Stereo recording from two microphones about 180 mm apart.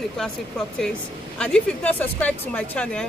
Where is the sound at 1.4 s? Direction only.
5° left (ahead or behind).